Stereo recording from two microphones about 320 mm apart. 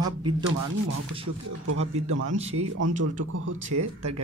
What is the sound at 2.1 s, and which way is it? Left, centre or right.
Speech, right.